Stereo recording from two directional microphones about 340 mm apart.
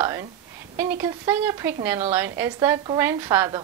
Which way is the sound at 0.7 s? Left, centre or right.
Centre.